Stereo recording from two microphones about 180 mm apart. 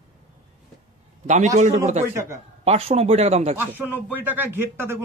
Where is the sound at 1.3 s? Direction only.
40° right (ahead or behind).